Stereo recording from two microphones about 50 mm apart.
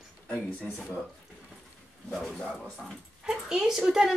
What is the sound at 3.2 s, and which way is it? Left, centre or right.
Speech, centre.